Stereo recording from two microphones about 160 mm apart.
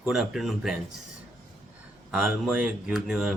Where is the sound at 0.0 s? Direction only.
Centre (ahead or behind).